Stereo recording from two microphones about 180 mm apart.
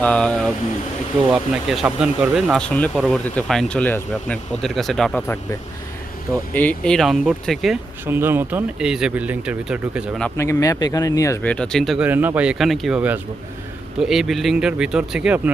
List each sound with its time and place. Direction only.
0.0 s speech: 5° left (ahead or behind)
6.5 s speech: 10° left (ahead or behind)
8.0 s speech: 10° right (ahead or behind)
10.2 s speech: 15° left (ahead or behind)
11.5 s speech: 5° left (ahead or behind)